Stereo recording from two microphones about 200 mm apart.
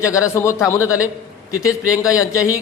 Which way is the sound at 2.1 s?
15° left (ahead or behind).